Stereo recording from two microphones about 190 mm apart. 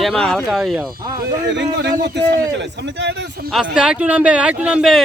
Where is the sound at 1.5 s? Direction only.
65° right (ahead or behind).